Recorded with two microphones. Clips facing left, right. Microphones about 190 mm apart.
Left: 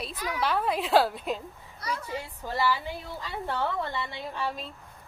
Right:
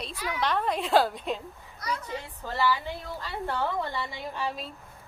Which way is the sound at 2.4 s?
10° left (ahead or behind).